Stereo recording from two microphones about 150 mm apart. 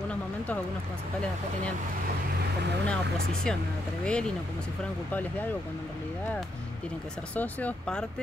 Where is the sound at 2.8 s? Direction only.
5° left (ahead or behind).